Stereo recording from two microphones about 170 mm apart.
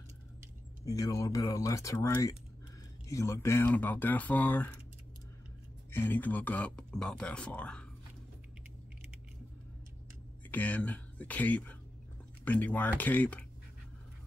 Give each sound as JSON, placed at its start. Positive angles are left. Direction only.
{"t": 0.8, "sound": "speech", "side_deg": 20}
{"t": 5.9, "sound": "speech", "side_deg": 10}
{"t": 10.5, "sound": "speech", "side_deg": 10}